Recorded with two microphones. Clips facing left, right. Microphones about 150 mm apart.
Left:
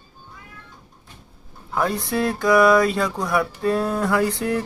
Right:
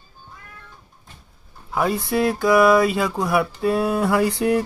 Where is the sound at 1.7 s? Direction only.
5° right (ahead or behind).